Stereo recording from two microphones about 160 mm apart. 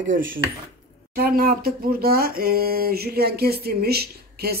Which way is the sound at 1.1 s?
65° right (ahead or behind).